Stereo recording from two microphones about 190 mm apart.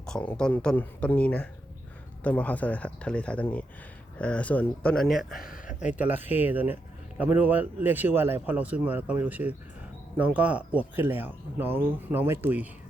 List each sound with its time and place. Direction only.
0.0 s speech: 5° left (ahead or behind)
5.4 s speech: 45° left (ahead or behind)
5.9 s speech: 10° right (ahead or behind)